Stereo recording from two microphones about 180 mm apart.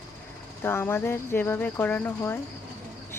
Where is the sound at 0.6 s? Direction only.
10° left (ahead or behind).